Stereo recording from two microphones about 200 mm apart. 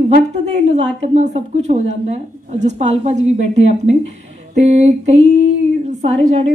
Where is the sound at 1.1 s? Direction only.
35° right (ahead or behind).